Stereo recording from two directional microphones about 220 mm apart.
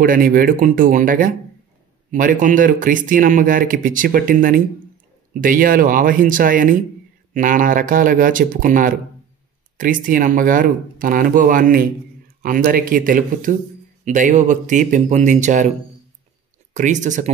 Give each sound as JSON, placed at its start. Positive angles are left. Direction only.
{"t": 0.0, "sound": "speech", "side_deg": -40}
{"t": 16.7, "sound": "speech", "side_deg": -35}